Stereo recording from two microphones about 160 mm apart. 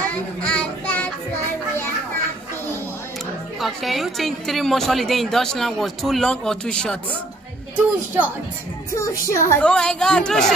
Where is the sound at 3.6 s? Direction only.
Centre (ahead or behind).